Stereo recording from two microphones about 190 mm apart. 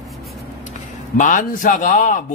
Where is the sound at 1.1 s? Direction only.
40° left (ahead or behind).